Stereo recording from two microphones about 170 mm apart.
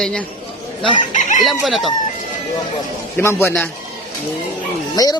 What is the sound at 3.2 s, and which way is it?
Speech, 10° left (ahead or behind).